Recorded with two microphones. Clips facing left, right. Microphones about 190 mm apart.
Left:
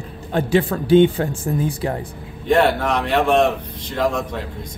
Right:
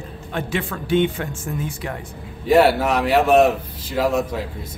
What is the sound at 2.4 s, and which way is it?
A man's voice, 5° right (ahead or behind).